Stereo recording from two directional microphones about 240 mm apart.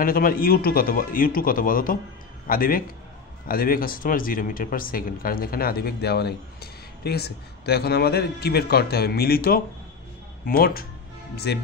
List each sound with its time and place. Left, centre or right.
0.0 s speech: left